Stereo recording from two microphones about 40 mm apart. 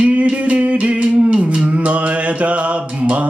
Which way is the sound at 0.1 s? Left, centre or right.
Right.